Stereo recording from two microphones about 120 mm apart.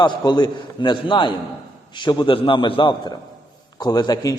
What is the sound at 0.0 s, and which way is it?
A man's voice, 40° left (ahead or behind).